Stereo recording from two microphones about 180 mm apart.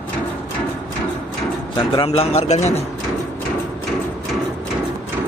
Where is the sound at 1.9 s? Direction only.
30° left (ahead or behind).